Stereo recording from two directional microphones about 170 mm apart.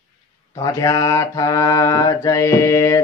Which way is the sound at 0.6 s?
20° left (ahead or behind).